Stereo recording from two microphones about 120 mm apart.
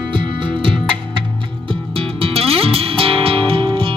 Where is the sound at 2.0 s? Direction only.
50° right (ahead or behind).